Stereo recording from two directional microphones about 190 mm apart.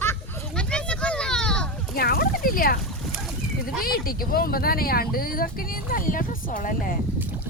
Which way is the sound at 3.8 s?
50° left (ahead or behind).